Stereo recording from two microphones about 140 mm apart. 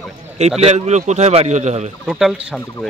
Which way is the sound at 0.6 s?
50° right (ahead or behind).